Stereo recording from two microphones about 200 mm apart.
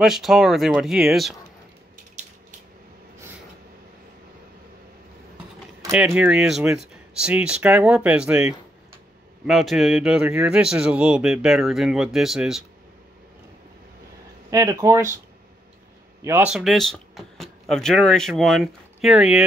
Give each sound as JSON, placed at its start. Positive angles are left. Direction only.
{"t": 0.0, "sound": "speech", "side_deg": 0}
{"t": 5.9, "sound": "speech", "side_deg": -5}
{"t": 14.5, "sound": "speech", "side_deg": -15}
{"t": 16.2, "sound": "speech", "side_deg": -10}